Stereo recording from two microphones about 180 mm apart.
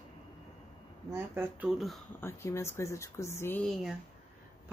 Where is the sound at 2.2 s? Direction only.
15° left (ahead or behind).